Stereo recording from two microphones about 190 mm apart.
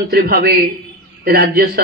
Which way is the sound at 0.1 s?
50° right (ahead or behind).